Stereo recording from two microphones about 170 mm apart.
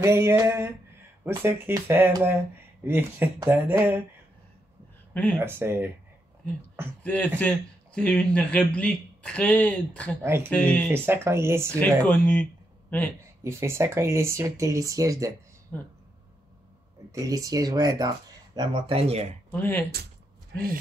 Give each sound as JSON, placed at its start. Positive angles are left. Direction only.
{"t": 0.0, "sound": "speech", "side_deg": -15}
{"t": 5.1, "sound": "speech", "side_deg": 10}
{"t": 5.4, "sound": "speech", "side_deg": -15}
{"t": 7.0, "sound": "speech", "side_deg": 10}
{"t": 10.2, "sound": "speech", "side_deg": -15}
{"t": 10.5, "sound": "speech", "side_deg": 10}
{"t": 10.9, "sound": "speech", "side_deg": -15}
{"t": 12.1, "sound": "speech", "side_deg": 10}
{"t": 13.4, "sound": "speech", "side_deg": -15}
{"t": 15.7, "sound": "speech", "side_deg": 10}
{"t": 17.1, "sound": "speech", "side_deg": -20}
{"t": 19.5, "sound": "speech", "side_deg": 10}